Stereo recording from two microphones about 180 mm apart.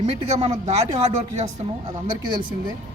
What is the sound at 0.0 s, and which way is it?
Speech, 35° right (ahead or behind).